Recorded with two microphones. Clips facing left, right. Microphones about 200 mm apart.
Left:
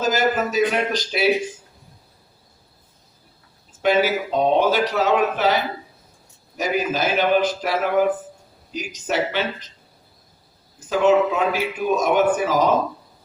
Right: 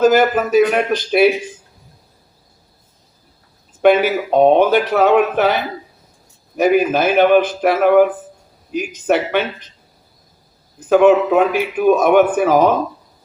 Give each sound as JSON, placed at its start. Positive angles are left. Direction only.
{"t": 0.0, "sound": "a man's voice", "side_deg": -55}
{"t": 3.8, "sound": "a man's voice", "side_deg": -55}
{"t": 6.6, "sound": "a man's voice", "side_deg": -55}
{"t": 10.8, "sound": "a man's voice", "side_deg": -55}